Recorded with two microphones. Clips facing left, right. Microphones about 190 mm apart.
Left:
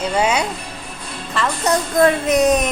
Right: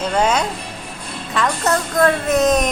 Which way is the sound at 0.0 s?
10° left (ahead or behind).